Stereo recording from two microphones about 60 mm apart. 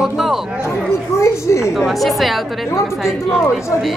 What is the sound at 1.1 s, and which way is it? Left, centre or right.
Speech, left.